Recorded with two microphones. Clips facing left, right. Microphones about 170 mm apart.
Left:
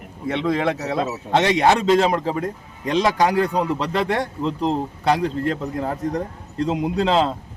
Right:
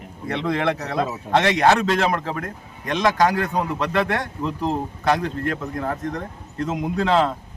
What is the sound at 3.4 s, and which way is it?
Speech, 30° left (ahead or behind).